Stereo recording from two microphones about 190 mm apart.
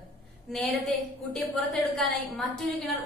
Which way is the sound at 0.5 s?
Centre (ahead or behind).